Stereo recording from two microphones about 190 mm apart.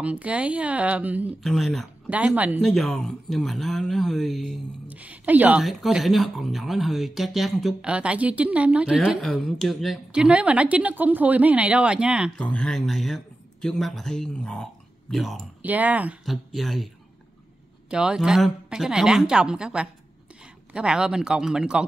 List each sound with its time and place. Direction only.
0.0 s speech: 5° right (ahead or behind)